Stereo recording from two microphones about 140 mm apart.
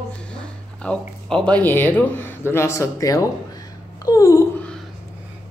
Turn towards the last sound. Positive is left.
turn(degrees=25)  # may be behind; listen again after turning